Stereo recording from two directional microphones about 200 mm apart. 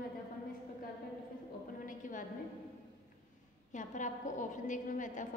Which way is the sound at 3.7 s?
40° left (ahead or behind).